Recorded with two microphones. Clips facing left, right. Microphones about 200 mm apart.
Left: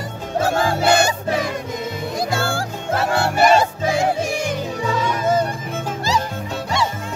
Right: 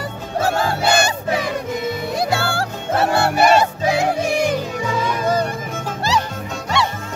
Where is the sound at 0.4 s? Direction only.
65° right (ahead or behind).